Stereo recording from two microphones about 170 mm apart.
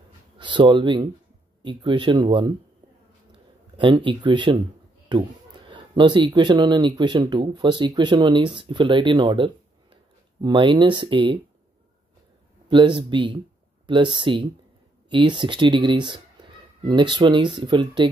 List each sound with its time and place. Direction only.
0.4 s speech: 30° right (ahead or behind)
3.3 s a sound: 30° right (ahead or behind)
5.1 s speech: 30° right (ahead or behind)
12.6 s speech: 25° right (ahead or behind)